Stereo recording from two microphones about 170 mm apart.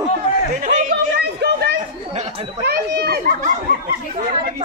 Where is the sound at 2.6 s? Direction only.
65° right (ahead or behind).